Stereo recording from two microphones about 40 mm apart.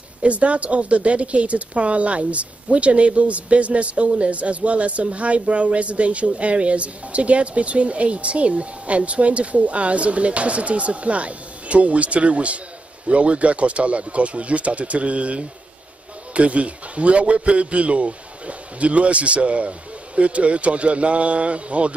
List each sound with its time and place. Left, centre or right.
0.2 s speech: right